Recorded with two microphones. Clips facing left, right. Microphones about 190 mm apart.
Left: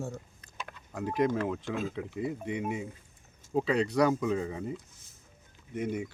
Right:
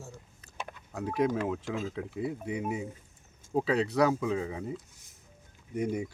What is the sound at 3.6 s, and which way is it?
Speech, 5° right (ahead or behind).